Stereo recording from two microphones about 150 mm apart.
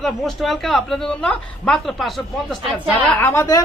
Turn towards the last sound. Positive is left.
turn(degrees=20)  # may be behind; listen again after turning